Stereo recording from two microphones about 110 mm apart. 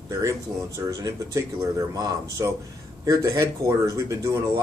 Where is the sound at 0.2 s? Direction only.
30° right (ahead or behind).